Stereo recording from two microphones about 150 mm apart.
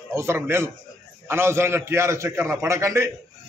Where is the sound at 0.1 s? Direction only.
15° right (ahead or behind).